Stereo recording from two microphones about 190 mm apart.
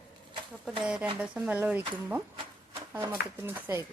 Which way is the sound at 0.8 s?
5° right (ahead or behind).